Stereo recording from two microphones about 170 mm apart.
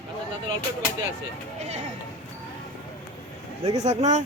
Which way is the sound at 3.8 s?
40° right (ahead or behind).